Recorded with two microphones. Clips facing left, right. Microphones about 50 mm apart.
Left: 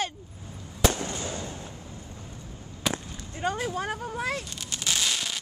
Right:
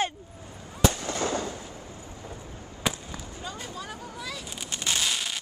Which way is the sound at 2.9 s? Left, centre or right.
Left.